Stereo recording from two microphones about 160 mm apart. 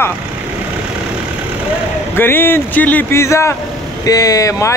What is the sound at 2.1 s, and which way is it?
A man's voice, 15° left (ahead or behind).